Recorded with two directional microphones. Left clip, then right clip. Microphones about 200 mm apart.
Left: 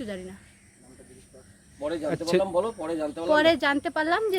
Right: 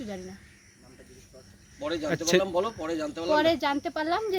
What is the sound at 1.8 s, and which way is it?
Speech, 20° left (ahead or behind).